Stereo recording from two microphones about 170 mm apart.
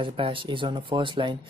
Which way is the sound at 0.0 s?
30° right (ahead or behind).